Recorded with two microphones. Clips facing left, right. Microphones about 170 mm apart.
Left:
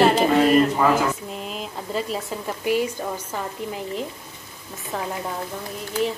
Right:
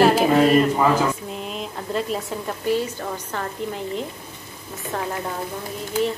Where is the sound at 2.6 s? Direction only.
15° left (ahead or behind).